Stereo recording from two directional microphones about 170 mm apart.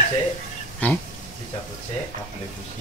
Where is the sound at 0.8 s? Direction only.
10° left (ahead or behind).